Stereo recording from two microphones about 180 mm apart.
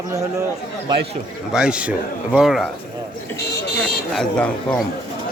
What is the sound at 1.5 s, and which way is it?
Speech, 5° right (ahead or behind).